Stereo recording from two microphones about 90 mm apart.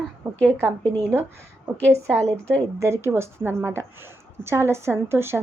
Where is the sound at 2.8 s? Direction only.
30° right (ahead or behind).